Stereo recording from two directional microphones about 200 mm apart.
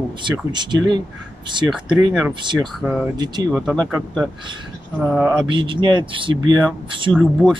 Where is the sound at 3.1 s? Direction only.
20° right (ahead or behind).